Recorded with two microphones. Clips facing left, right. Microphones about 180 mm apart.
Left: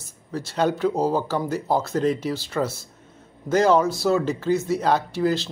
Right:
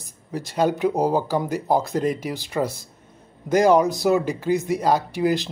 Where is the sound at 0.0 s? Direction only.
15° right (ahead or behind).